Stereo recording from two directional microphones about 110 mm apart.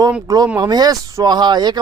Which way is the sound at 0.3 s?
30° right (ahead or behind).